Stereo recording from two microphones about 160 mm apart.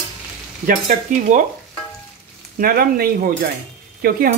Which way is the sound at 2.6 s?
65° right (ahead or behind).